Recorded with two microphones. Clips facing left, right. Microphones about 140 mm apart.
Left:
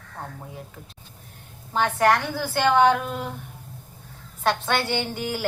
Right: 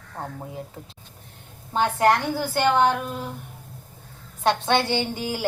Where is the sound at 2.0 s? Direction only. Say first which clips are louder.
Right 1 dB; 15° right (ahead or behind).